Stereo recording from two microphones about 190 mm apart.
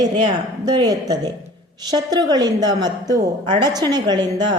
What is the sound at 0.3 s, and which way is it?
A woman's voice, 20° right (ahead or behind).